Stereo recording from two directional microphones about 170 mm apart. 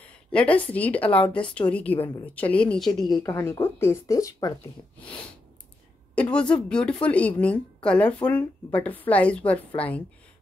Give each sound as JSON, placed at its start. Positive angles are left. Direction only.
{"t": 0.0, "sound": "a woman's voice", "side_deg": 5}
{"t": 3.1, "sound": "speech", "side_deg": 20}
{"t": 6.3, "sound": "a woman's voice", "side_deg": 5}